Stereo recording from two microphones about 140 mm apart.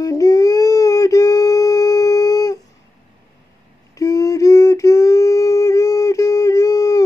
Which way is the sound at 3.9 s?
25° left (ahead or behind).